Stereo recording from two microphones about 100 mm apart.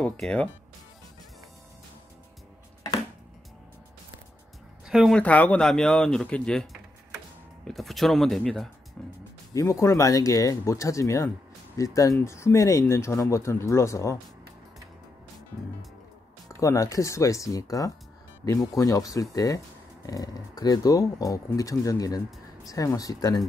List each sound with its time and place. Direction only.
0.0 s speech: 10° left (ahead or behind)
4.8 s a sound: 5° right (ahead or behind)
5.1 s speech: 15° left (ahead or behind)
9.5 s speech: 30° left (ahead or behind)
16.4 s speech: 30° left (ahead or behind)